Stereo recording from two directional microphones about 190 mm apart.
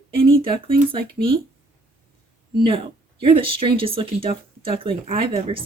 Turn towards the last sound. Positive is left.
turn(degrees=-30)  # may be behind; listen again after turning